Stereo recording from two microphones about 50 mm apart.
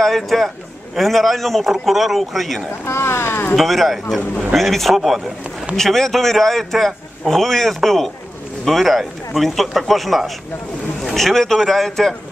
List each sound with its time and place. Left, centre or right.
0.0 s a man's voice: centre
2.8 s speech: left
3.5 s a man's voice: centre